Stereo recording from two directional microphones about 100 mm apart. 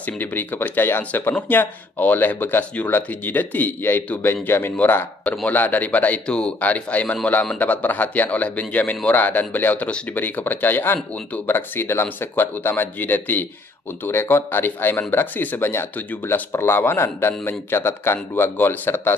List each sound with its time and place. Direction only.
0.0 s speech: 20° left (ahead or behind)